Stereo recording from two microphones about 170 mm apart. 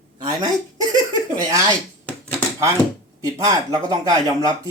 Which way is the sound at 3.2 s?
20° right (ahead or behind).